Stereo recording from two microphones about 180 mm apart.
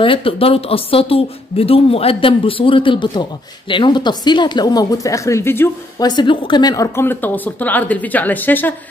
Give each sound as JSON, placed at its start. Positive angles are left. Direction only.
{"t": 0.0, "sound": "speech", "side_deg": 30}
{"t": 6.0, "sound": "speech", "side_deg": 25}